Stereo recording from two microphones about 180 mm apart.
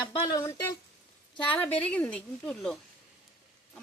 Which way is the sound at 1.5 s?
5° left (ahead or behind).